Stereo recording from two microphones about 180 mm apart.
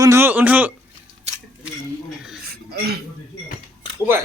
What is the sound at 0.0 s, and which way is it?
Speech, 15° right (ahead or behind).